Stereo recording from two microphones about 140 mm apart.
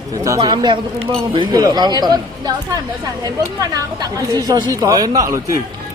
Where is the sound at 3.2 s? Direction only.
30° right (ahead or behind).